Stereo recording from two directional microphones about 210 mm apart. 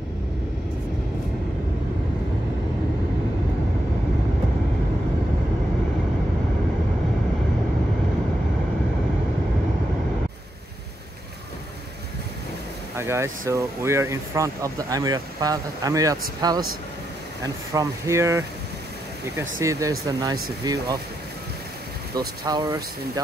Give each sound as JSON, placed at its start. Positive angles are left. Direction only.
{"t": 12.9, "sound": "speech", "side_deg": -15}
{"t": 17.7, "sound": "speech", "side_deg": -15}
{"t": 22.4, "sound": "speech", "side_deg": -20}